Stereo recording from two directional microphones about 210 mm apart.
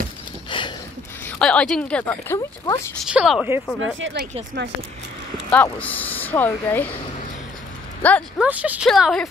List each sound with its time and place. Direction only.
0.5 s a sound: 25° left (ahead or behind)
1.2 s speech: 5° left (ahead or behind)
3.1 s speech: centre (ahead or behind)
5.5 s speech: 5° left (ahead or behind)
8.0 s speech: 5° left (ahead or behind)
8.4 s speech: 5° right (ahead or behind)